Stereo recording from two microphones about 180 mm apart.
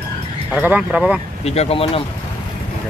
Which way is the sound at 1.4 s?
35° left (ahead or behind).